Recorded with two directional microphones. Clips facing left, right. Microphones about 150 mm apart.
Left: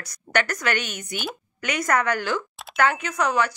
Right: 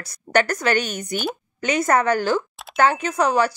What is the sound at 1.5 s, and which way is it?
A woman's voice, 30° right (ahead or behind).